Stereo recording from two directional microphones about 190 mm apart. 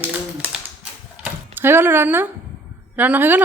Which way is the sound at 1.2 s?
10° right (ahead or behind).